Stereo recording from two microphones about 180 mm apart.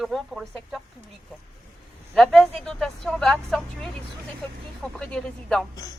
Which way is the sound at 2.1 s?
Centre (ahead or behind).